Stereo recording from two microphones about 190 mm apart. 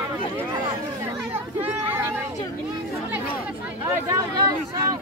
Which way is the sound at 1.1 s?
10° right (ahead or behind).